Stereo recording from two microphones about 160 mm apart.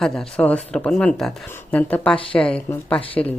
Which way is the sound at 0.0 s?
Centre (ahead or behind).